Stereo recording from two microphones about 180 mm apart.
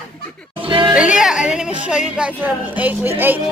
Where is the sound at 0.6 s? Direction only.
25° right (ahead or behind).